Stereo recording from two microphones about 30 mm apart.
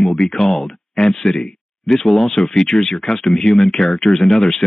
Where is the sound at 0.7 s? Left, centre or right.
Centre.